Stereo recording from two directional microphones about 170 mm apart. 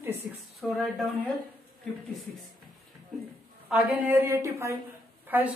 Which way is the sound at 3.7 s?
10° right (ahead or behind).